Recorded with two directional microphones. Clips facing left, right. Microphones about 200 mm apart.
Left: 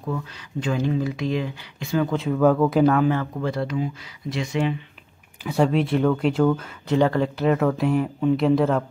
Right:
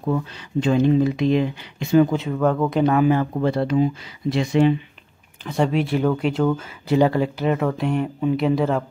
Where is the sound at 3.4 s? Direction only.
25° right (ahead or behind).